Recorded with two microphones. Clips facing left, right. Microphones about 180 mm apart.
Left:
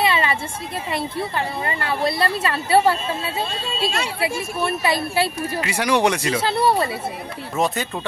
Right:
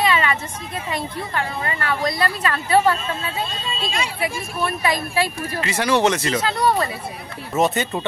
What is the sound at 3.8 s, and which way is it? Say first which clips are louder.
Speech: left 2 dB; 70° left (ahead or behind).